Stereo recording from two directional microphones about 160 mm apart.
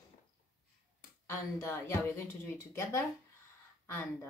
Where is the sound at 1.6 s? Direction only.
15° left (ahead or behind).